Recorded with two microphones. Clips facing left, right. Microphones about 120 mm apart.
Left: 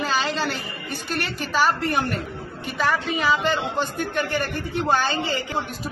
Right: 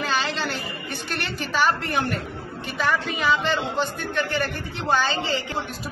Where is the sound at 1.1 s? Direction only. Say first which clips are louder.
Left 2 dB; 45° left (ahead or behind).